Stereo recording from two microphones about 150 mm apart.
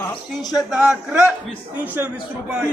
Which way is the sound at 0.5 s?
5° right (ahead or behind).